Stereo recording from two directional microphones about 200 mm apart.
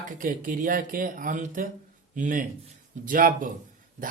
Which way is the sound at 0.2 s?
40° right (ahead or behind).